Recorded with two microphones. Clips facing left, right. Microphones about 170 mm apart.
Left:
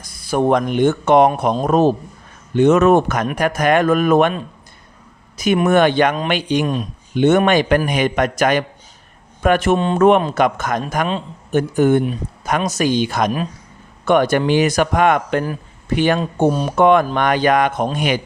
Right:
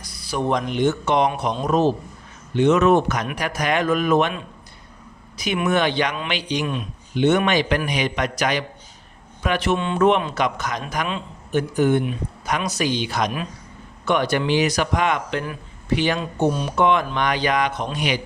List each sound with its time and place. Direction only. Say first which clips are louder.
0.0 s a man's voice: left 7 dB; 50° left (ahead or behind)